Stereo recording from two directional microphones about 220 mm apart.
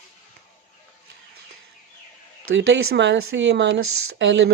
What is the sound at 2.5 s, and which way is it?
Speech, 55° right (ahead or behind).